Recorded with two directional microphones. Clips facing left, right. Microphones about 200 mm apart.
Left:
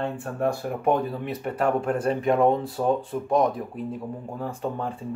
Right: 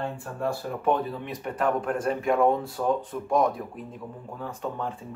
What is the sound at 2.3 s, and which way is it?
Speech, 20° left (ahead or behind).